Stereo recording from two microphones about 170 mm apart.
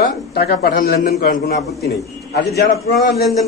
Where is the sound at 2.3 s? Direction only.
75° left (ahead or behind).